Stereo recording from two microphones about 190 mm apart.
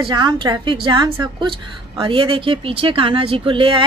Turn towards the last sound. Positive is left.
turn(degrees=-25)  # may be behind; listen again after turning